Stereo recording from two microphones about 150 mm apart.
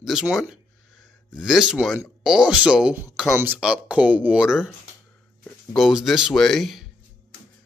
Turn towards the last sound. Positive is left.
turn(degrees=0)  # may be behind; listen again after turning